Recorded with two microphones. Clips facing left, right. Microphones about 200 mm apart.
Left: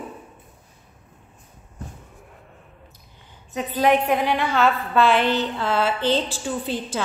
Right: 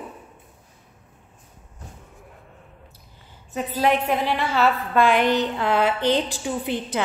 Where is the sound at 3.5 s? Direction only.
Centre (ahead or behind); by 7.0 s 20° right (ahead or behind).